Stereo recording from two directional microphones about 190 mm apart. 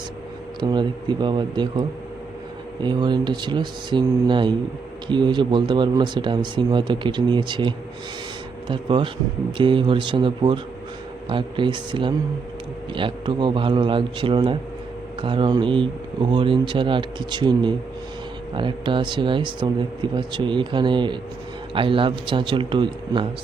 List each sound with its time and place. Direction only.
0.6 s speech: 25° right (ahead or behind)
2.8 s speech: 25° right (ahead or behind)